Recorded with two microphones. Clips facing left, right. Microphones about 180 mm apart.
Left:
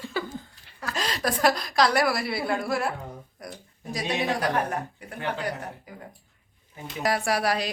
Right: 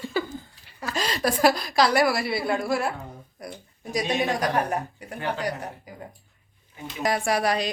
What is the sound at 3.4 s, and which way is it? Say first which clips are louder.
Speech: right 2 dB; 10° right (ahead or behind).